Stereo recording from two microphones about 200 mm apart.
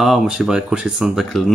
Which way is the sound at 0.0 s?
Centre (ahead or behind).